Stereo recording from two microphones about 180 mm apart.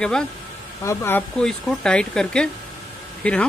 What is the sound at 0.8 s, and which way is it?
Speech, 15° left (ahead or behind).